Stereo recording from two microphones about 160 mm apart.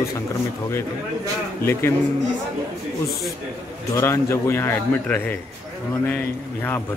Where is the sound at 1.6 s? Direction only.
15° left (ahead or behind).